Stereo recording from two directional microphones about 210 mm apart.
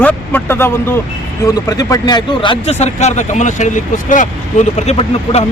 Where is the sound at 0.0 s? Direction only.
10° left (ahead or behind); by 5.5 s 30° left (ahead or behind).